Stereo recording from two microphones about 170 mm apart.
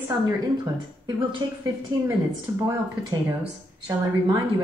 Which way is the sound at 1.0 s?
30° right (ahead or behind).